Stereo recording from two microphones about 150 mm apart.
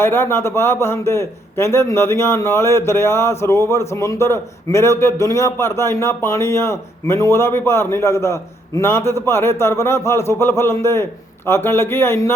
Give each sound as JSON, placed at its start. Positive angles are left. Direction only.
{"t": 0.0, "sound": "a man's voice", "side_deg": 15}